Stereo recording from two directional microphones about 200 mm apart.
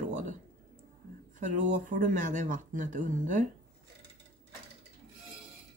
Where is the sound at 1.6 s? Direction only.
40° right (ahead or behind).